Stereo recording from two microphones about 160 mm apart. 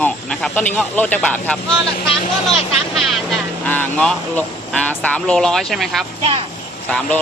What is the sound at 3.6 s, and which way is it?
Speech, 10° left (ahead or behind).